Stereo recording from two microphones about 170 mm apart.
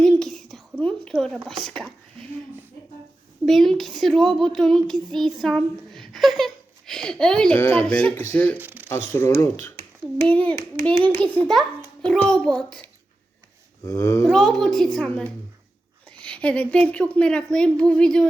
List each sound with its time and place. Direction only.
0.0 s whispering: 5° left (ahead or behind)
1.5 s speech: 5° left (ahead or behind)
3.4 s speech: centre (ahead or behind)
8.5 s a sound: 10° right (ahead or behind)
9.1 s a child's voice: 15° left (ahead or behind)
13.8 s a child's voice: 20° left (ahead or behind)
14.3 s speech: centre (ahead or behind)